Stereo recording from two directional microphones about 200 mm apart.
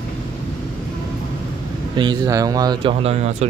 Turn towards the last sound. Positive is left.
turn(degrees=-35)  # may be behind; listen again after turning